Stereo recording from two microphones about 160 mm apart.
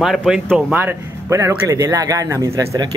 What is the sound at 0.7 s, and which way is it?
Speech, 15° right (ahead or behind).